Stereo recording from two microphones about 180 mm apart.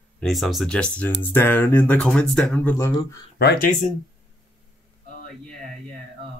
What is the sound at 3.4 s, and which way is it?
Speech, 65° left (ahead or behind).